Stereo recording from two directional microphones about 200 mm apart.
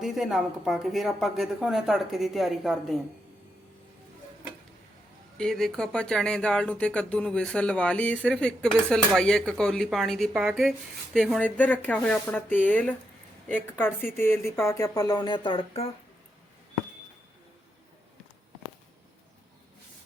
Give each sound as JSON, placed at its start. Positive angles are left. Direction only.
{"t": 0.0, "sound": "speech", "side_deg": 0}
{"t": 5.4, "sound": "a woman's voice", "side_deg": 0}